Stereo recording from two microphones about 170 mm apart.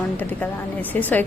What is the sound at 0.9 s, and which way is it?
Speech, 10° left (ahead or behind).